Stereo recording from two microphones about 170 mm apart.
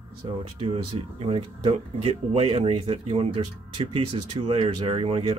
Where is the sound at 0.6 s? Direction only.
35° right (ahead or behind).